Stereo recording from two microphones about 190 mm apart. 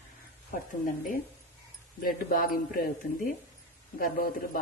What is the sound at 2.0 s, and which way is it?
Speech, 50° left (ahead or behind).